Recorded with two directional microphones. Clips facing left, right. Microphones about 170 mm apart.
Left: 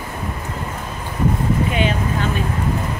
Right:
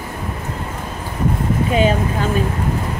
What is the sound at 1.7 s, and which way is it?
Speech, 40° right (ahead or behind).